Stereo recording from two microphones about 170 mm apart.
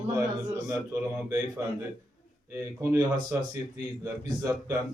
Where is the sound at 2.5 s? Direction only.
15° right (ahead or behind).